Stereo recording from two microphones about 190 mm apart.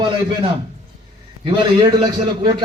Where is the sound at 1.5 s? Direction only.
20° right (ahead or behind).